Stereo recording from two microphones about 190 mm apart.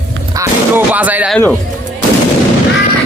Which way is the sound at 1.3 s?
5° left (ahead or behind).